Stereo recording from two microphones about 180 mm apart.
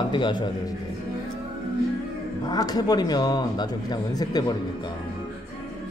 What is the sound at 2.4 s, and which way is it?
Speech, 20° left (ahead or behind).